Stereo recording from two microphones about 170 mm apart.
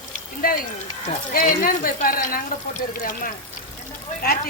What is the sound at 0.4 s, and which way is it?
Speech, 60° left (ahead or behind).